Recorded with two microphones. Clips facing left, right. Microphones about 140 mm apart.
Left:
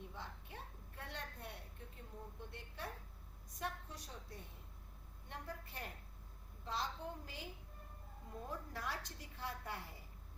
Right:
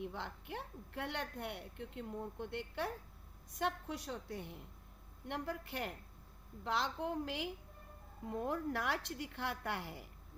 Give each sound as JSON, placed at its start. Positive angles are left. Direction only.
{"t": 0.0, "sound": "a woman's voice", "side_deg": -75}